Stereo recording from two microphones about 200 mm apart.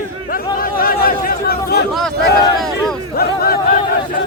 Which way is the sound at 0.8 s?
45° left (ahead or behind).